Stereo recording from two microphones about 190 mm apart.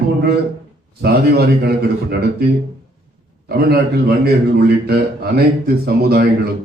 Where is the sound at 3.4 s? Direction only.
55° right (ahead or behind).